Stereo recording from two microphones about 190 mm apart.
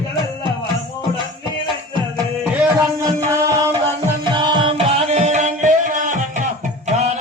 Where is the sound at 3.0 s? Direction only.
15° right (ahead or behind).